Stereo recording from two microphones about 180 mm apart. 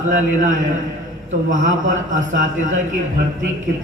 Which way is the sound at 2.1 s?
45° right (ahead or behind).